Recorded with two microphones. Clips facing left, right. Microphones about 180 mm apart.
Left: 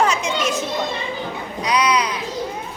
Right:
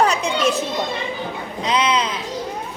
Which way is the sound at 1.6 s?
25° right (ahead or behind).